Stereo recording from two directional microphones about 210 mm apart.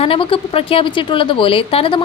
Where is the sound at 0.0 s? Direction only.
25° left (ahead or behind).